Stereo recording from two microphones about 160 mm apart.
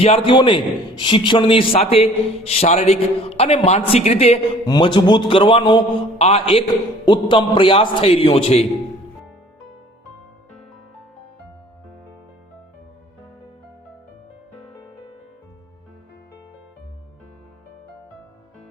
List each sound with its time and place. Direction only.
0.0 s a man's voice: 35° left (ahead or behind)
4.6 s a man's voice: 25° left (ahead or behind)